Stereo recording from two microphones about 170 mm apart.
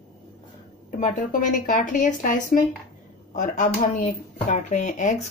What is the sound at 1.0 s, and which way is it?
A woman's voice, 50° left (ahead or behind).